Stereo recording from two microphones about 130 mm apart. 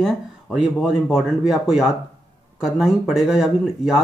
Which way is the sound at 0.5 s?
5° right (ahead or behind).